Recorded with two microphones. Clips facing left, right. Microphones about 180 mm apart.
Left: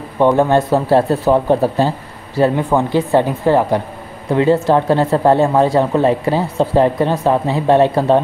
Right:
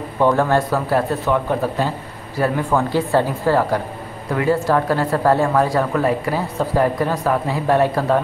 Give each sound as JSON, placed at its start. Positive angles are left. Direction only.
{"t": 0.2, "sound": "speech", "side_deg": 20}